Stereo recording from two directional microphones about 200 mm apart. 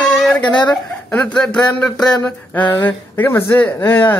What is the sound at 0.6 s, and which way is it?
Speech, 5° left (ahead or behind).